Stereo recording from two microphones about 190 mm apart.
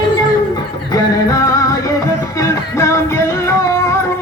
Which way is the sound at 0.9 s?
15° left (ahead or behind).